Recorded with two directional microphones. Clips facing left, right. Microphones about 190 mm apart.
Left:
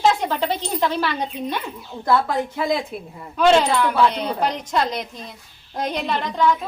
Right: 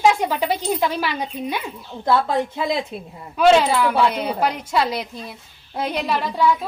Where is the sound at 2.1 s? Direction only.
25° right (ahead or behind).